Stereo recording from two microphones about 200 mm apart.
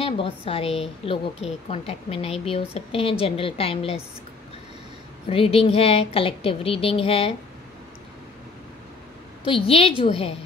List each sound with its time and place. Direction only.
0.0 s a woman's voice: 30° left (ahead or behind)
5.3 s a woman's voice: 30° left (ahead or behind)
9.4 s a woman's voice: 25° left (ahead or behind)